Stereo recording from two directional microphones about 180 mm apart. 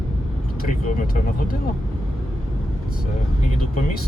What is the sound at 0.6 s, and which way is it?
Speech, 50° left (ahead or behind).